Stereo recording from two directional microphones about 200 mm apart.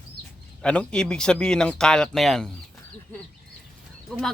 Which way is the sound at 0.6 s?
5° left (ahead or behind).